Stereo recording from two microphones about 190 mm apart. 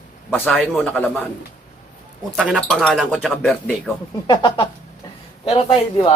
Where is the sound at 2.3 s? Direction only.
Centre (ahead or behind).